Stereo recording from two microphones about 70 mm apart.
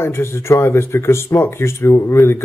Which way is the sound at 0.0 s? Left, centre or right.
Left.